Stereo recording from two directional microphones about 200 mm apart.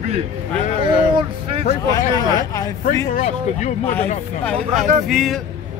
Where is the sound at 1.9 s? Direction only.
20° left (ahead or behind).